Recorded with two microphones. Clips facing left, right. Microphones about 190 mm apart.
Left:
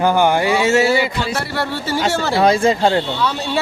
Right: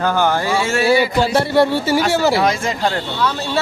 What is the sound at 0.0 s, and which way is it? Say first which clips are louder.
Speech: left 3 dB; 15° left (ahead or behind).